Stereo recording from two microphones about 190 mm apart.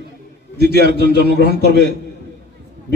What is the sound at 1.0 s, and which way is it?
Speech, 60° left (ahead or behind).